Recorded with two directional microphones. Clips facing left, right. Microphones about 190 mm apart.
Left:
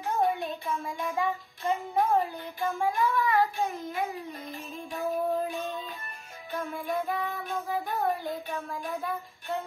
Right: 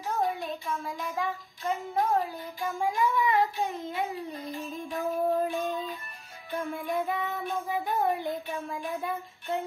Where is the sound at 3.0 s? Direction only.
15° right (ahead or behind).